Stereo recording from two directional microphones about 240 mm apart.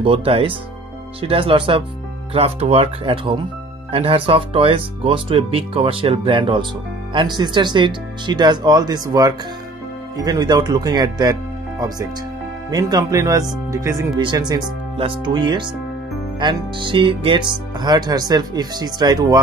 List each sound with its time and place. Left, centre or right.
0.0 s speech: right
12.7 s speech: centre